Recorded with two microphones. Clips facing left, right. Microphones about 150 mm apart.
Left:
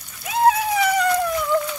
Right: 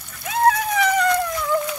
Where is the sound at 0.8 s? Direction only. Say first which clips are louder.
Right 1 dB; 10° left (ahead or behind).